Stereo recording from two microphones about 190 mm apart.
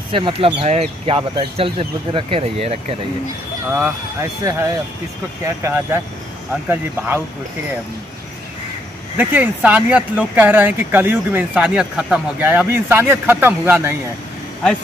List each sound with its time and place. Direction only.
0.1 s speech: 30° right (ahead or behind)
3.7 s speech: 15° right (ahead or behind)
9.1 s speech: 10° right (ahead or behind)